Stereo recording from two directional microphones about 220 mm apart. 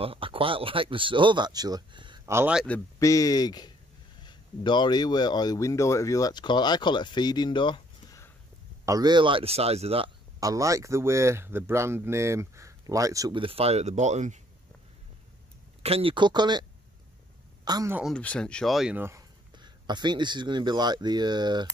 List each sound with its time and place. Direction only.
0.0 s speech: 25° right (ahead or behind); by 2.6 s 10° right (ahead or behind)
2.6 s speech: 10° left (ahead or behind)
8.8 s speech: 15° right (ahead or behind); by 14.4 s 30° right (ahead or behind)
15.8 s speech: 25° right (ahead or behind)
17.6 s speech: 15° right (ahead or behind)
17.9 s speech: centre (ahead or behind); by 21.6 s 20° right (ahead or behind)